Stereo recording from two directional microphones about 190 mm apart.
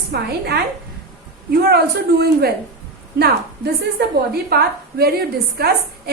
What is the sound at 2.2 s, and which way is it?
Speech, 55° right (ahead or behind).